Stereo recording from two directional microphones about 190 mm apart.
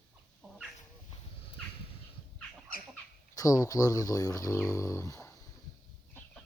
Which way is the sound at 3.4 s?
20° left (ahead or behind).